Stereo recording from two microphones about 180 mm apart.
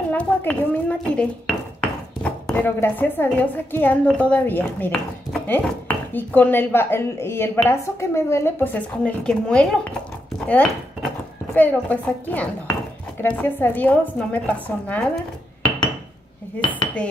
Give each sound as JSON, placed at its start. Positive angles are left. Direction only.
{"t": 0.1, "sound": "speech", "side_deg": 10}
{"t": 11.5, "sound": "speech", "side_deg": 10}